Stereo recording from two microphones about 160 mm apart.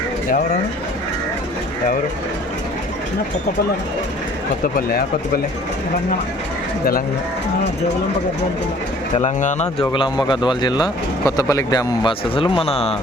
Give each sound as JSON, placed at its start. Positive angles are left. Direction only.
{"t": 4.6, "sound": "speech", "side_deg": 70}
{"t": 9.1, "sound": "speech", "side_deg": 50}
{"t": 9.9, "sound": "speech", "side_deg": 30}